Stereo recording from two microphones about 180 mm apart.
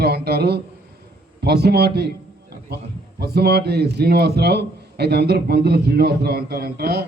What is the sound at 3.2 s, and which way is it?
A man's voice, 65° right (ahead or behind).